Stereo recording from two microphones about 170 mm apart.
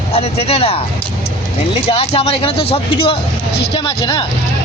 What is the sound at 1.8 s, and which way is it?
Speech, 35° left (ahead or behind).